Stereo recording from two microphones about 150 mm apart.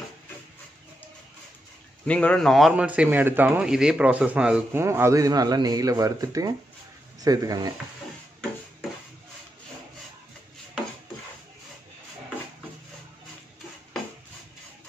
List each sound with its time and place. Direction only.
2.0 s a man's voice: 10° left (ahead or behind); by 4.8 s 5° right (ahead or behind)
4.8 s speech: 20° right (ahead or behind)